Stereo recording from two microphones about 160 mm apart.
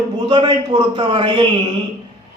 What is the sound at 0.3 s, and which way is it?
A man's voice, 25° right (ahead or behind).